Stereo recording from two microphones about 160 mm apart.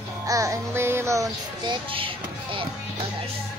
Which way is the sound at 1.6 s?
30° right (ahead or behind).